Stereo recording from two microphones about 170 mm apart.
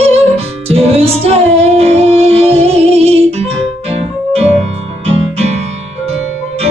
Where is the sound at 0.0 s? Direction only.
35° right (ahead or behind).